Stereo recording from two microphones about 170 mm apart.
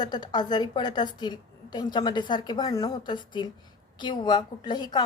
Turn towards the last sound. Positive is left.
turn(degrees=25)  # may be behind; listen again after turning